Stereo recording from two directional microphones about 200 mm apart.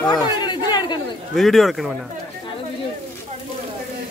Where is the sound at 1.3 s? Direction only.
Centre (ahead or behind).